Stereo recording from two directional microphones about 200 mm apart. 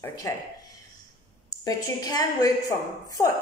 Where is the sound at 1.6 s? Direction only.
20° left (ahead or behind).